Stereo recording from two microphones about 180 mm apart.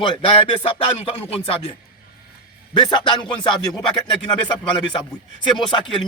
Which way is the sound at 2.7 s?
25° left (ahead or behind).